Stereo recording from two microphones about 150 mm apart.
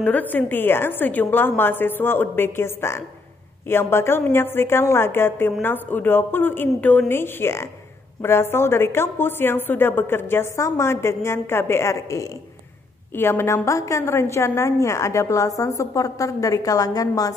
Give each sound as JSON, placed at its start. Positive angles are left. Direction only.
{"t": 0.0, "sound": "a woman's voice", "side_deg": 10}